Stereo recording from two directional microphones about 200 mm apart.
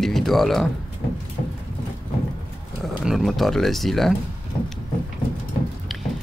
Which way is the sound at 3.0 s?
Centre (ahead or behind).